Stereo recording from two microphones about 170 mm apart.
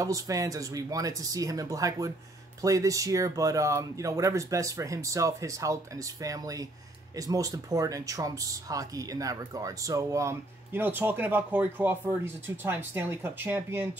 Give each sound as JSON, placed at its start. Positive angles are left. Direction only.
{"t": 0.0, "sound": "speech", "side_deg": -20}